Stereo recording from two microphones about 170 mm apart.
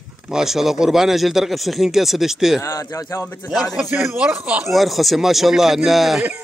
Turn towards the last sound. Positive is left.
turn(degrees=0)  # may be behind; listen again after turning